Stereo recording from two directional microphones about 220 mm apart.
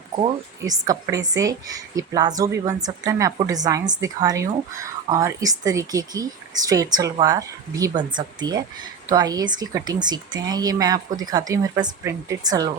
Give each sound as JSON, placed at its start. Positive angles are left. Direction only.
{"t": 0.7, "sound": "a woman's voice", "side_deg": -15}